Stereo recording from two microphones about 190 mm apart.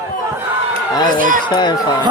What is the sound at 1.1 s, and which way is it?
Speech, 45° right (ahead or behind).